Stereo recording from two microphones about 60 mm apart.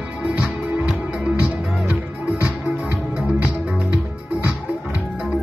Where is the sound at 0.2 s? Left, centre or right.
Right.